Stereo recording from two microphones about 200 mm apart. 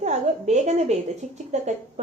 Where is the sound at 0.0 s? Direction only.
35° right (ahead or behind).